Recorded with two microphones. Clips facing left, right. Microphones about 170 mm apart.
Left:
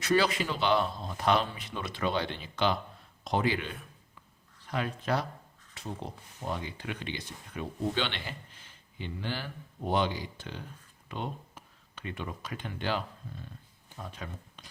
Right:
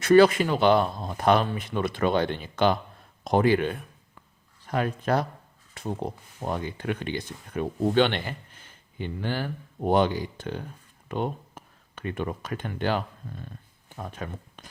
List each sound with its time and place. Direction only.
0.0 s speech: 50° right (ahead or behind)